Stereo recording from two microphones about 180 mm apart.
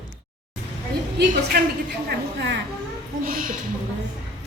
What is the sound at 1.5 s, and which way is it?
Speech, 65° right (ahead or behind).